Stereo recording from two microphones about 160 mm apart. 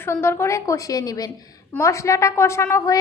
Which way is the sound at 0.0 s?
15° left (ahead or behind).